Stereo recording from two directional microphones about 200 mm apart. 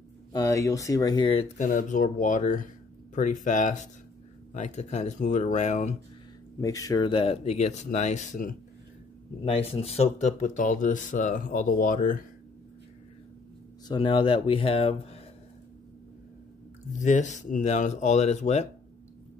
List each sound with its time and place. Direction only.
0.3 s speech: 15° left (ahead or behind); by 5.9 s 35° left (ahead or behind)
6.6 s speech: 15° left (ahead or behind); by 12.2 s 40° left (ahead or behind)
13.8 s speech: 25° left (ahead or behind)
16.9 s speech: 35° left (ahead or behind)